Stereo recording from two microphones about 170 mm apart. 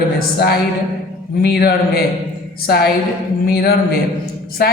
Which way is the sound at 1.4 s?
65° left (ahead or behind).